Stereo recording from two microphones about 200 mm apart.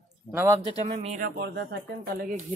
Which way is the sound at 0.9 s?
40° right (ahead or behind).